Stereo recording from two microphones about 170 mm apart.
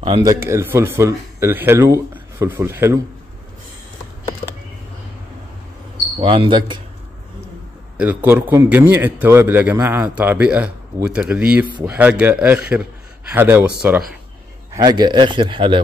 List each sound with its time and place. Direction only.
0.2 s a man's voice: 20° right (ahead or behind)
6.1 s speech: 30° right (ahead or behind)
8.0 s a man's voice: 10° right (ahead or behind)
14.7 s speech: 25° right (ahead or behind)